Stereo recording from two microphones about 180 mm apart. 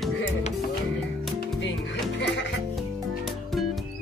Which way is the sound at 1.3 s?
90° left.